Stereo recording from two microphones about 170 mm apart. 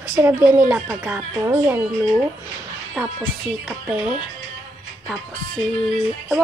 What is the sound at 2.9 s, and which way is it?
Speech, centre (ahead or behind).